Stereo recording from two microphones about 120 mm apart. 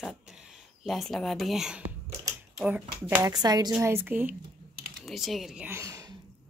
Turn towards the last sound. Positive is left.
turn(degrees=-20)  # may be behind; listen again after turning